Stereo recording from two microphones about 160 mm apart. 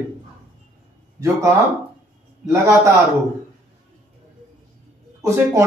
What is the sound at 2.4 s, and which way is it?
Speech, 20° right (ahead or behind).